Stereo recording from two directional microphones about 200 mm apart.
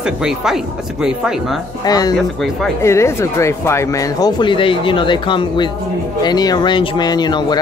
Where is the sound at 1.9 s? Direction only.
20° left (ahead or behind).